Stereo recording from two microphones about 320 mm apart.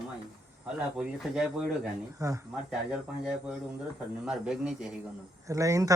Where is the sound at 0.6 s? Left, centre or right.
Centre.